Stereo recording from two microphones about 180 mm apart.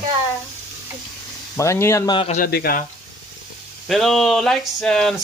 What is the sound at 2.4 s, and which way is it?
Speech, 55° left (ahead or behind).